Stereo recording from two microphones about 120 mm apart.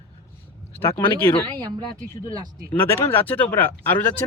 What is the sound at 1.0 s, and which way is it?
Speech, 45° left (ahead or behind).